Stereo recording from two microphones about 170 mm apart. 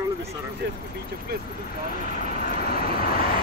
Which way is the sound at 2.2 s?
60° left (ahead or behind).